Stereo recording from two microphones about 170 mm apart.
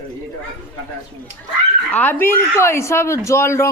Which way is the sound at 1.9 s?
10° left (ahead or behind).